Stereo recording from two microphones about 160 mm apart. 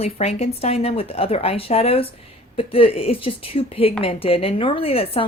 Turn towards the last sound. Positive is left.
turn(degrees=35)  # may be behind; listen again after turning